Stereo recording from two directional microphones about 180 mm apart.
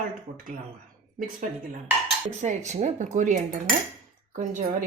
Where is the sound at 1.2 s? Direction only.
45° right (ahead or behind).